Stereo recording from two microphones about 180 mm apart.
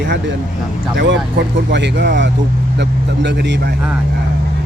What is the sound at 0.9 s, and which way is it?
Speech, 65° right (ahead or behind).